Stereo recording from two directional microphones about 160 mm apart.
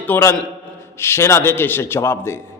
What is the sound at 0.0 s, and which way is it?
A man's voice, 15° left (ahead or behind).